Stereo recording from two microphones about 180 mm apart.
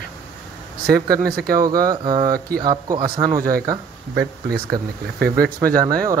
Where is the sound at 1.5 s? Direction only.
20° right (ahead or behind).